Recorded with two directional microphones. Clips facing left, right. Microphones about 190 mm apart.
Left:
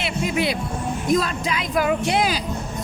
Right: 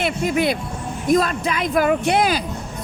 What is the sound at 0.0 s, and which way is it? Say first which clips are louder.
A woman's voice: right 3 dB; 50° right (ahead or behind).